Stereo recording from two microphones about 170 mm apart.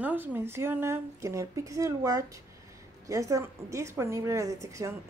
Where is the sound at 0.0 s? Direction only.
10° right (ahead or behind).